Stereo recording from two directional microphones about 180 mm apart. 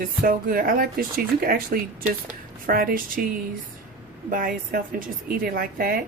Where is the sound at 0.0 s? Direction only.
50° right (ahead or behind).